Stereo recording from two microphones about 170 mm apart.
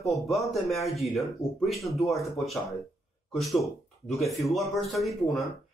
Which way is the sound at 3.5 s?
Centre (ahead or behind).